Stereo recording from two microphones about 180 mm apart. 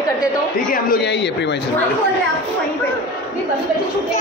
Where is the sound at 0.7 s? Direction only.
60° left (ahead or behind).